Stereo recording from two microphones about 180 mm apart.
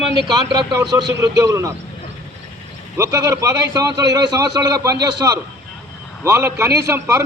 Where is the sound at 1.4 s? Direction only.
15° right (ahead or behind).